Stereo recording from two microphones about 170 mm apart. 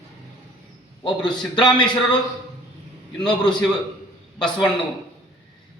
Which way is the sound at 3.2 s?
25° left (ahead or behind).